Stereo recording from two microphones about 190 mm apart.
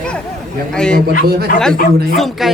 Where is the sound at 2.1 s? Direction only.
Centre (ahead or behind).